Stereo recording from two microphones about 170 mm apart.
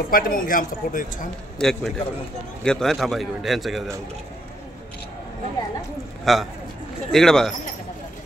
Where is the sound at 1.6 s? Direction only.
Centre (ahead or behind).